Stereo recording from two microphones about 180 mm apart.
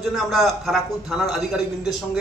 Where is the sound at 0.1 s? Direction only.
Centre (ahead or behind).